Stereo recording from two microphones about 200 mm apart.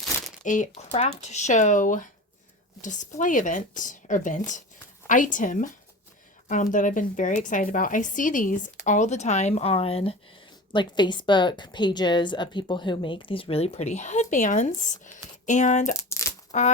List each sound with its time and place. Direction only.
0.4 s a woman's voice: 35° left (ahead or behind)
16.0 s crushing: 15° left (ahead or behind)
16.5 s a sound: 35° left (ahead or behind)